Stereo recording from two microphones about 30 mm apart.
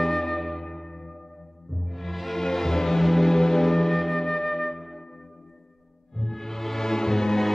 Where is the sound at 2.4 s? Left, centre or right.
Centre.